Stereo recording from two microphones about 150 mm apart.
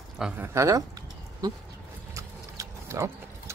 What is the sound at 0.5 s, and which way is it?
Speech, 20° right (ahead or behind).